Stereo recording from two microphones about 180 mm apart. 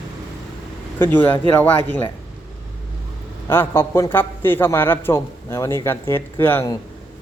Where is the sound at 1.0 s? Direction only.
10° left (ahead or behind).